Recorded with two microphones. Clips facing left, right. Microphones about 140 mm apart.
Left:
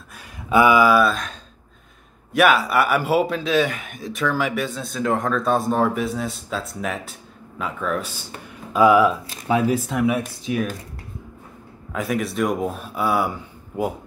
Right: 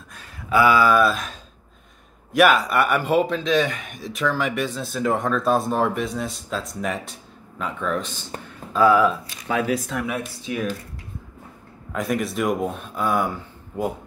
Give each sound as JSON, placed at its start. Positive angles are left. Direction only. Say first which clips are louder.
{"t": 0.2, "sound": "a sound", "louder": "left 2 dB", "side_deg": 20}
{"t": 1.0, "sound": "a man's voice", "louder": "even", "side_deg": 0}
{"t": 11.9, "sound": "a man's voice", "louder": "even", "side_deg": 0}